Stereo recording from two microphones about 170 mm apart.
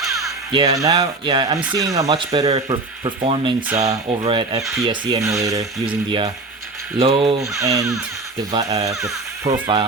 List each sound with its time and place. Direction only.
0.5 s speech: 20° right (ahead or behind)
7.5 s speech: 20° right (ahead or behind)